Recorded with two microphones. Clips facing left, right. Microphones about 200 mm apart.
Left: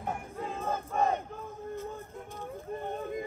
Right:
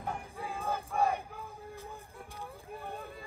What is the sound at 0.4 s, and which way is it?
Battle cry, 10° right (ahead or behind).